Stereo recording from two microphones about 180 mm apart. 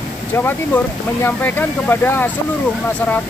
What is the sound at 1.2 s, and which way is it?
Speech, 10° left (ahead or behind).